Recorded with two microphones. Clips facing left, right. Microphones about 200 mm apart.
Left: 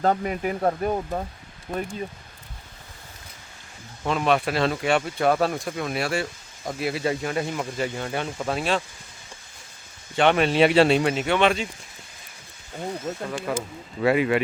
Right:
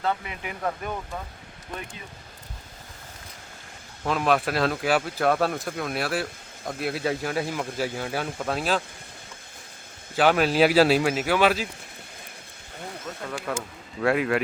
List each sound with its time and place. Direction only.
0.0 s speech: 40° left (ahead or behind)
1.7 s speech: 50° left (ahead or behind)
4.0 s speech: centre (ahead or behind)
10.2 s speech: centre (ahead or behind)
13.1 s speech: 25° left (ahead or behind)
13.6 s speech: centre (ahead or behind)